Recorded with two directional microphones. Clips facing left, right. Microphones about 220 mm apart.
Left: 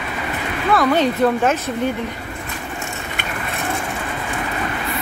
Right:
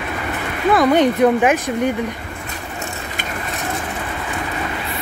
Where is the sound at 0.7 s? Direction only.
20° right (ahead or behind).